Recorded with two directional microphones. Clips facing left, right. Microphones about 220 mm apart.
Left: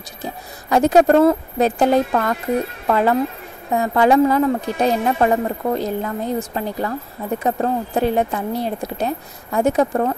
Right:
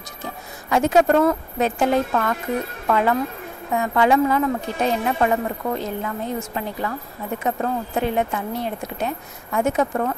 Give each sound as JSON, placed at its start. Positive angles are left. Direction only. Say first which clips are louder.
{"t": 0.2, "sound": "a woman's voice", "louder": "left 4 dB", "side_deg": 35}